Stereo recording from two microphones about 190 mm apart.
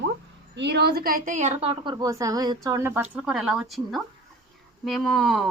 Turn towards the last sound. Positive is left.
turn(degrees=0)  # may be behind; listen again after turning